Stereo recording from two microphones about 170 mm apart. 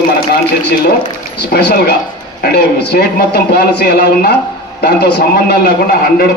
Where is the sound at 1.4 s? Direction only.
70° left (ahead or behind).